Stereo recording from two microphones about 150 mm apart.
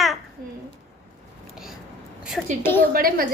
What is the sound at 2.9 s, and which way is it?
Speech, 75° right (ahead or behind).